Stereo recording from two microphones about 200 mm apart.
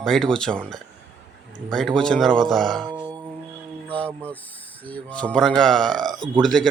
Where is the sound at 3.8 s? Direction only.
5° left (ahead or behind).